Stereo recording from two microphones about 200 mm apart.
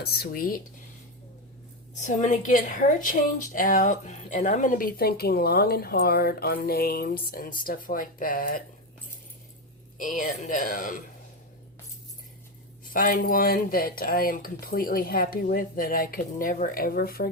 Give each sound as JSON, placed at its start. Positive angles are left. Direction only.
{"t": 0.0, "sound": "a woman's voice", "side_deg": 50}
{"t": 2.0, "sound": "a woman's voice", "side_deg": 35}
{"t": 10.0, "sound": "speech", "side_deg": 40}
{"t": 12.8, "sound": "a woman's voice", "side_deg": 45}